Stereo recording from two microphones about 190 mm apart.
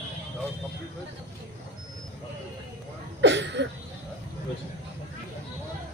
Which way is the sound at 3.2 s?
70° right (ahead or behind).